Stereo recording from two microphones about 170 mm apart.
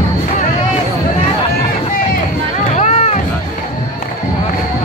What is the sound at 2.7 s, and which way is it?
Run, 40° left (ahead or behind).